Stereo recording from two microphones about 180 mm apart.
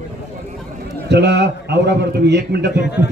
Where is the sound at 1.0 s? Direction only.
70° right (ahead or behind).